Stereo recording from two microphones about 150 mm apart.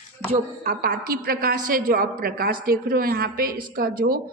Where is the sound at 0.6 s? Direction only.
70° right (ahead or behind).